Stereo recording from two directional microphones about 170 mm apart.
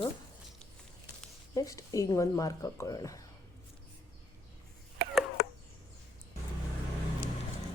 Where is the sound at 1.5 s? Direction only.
20° left (ahead or behind).